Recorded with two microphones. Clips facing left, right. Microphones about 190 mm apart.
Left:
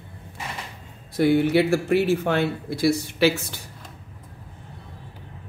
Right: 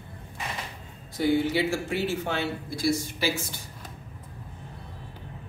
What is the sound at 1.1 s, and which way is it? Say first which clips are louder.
Speech: left 6 dB; 65° left (ahead or behind).